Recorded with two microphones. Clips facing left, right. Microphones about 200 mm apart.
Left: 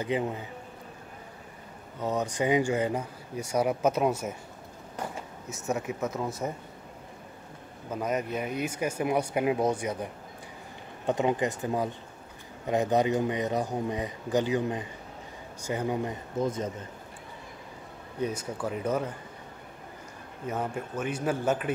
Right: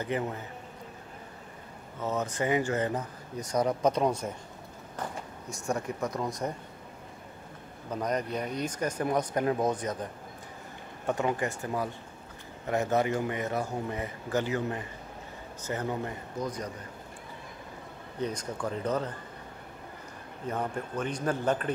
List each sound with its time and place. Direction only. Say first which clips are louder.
0.0 s speech: left 2 dB; 15° left (ahead or behind)
2.0 s speech: left 2 dB; 15° left (ahead or behind)
5.5 s speech: left 1 dB; 5° left (ahead or behind)
7.9 s speech: left 1 dB; 5° left (ahead or behind)
11.1 s speech: left 3 dB; 20° left (ahead or behind)
18.2 s speech: left 1 dB; 5° left (ahead or behind)
20.4 s speech: left 1 dB; 5° left (ahead or behind)